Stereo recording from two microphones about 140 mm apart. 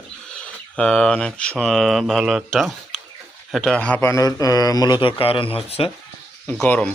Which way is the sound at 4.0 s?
20° left (ahead or behind).